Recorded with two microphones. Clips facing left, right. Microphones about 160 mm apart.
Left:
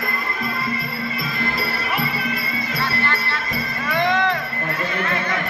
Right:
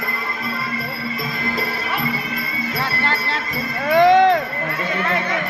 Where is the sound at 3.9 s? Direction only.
70° right (ahead or behind).